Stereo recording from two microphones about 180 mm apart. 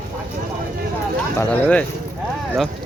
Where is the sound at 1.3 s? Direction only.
10° left (ahead or behind).